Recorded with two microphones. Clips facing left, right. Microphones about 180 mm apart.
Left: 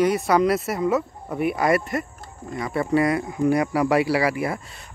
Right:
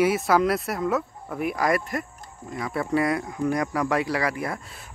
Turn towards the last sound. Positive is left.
turn(degrees=0)  # may be behind; listen again after turning